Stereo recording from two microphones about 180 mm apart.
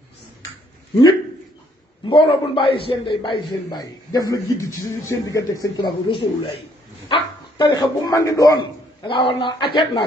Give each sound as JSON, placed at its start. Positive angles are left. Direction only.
{"t": 2.0, "sound": "a man's voice", "side_deg": 30}